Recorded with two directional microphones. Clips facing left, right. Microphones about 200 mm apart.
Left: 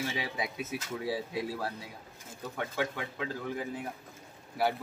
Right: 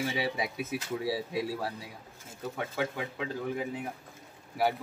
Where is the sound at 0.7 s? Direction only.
30° right (ahead or behind).